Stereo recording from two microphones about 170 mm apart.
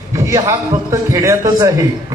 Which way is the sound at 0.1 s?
20° right (ahead or behind).